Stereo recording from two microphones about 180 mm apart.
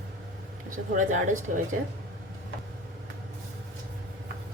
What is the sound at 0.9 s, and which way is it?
Speech, 45° right (ahead or behind).